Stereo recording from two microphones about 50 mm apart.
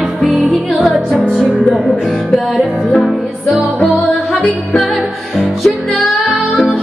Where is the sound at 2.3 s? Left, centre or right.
Centre.